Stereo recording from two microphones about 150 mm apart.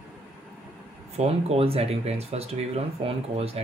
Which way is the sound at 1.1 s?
45° right (ahead or behind).